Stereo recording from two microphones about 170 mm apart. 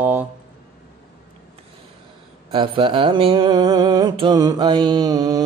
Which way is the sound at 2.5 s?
30° right (ahead or behind).